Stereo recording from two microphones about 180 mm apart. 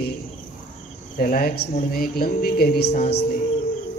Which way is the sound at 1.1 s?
55° left (ahead or behind).